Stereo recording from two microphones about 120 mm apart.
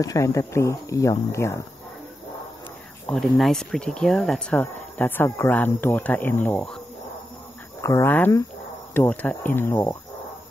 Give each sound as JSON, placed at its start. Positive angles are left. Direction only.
{"t": 0.0, "sound": "speech", "side_deg": 30}
{"t": 3.1, "sound": "speech", "side_deg": 0}
{"t": 7.8, "sound": "speech", "side_deg": 20}